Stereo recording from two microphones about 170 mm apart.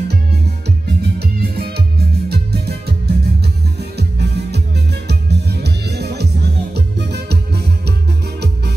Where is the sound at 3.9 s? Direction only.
75° right (ahead or behind).